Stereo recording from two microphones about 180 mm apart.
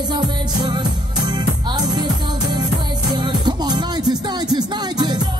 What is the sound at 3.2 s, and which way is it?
Music, 25° right (ahead or behind).